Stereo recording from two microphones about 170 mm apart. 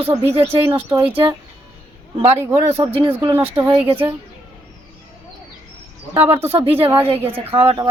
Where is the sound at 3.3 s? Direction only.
10° right (ahead or behind).